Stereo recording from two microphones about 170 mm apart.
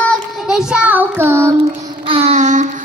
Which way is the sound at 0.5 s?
5° right (ahead or behind).